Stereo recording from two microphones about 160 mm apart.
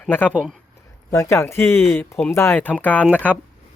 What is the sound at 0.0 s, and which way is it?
Speech, 10° left (ahead or behind).